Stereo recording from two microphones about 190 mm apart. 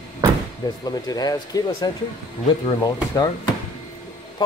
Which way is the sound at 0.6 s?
20° left (ahead or behind).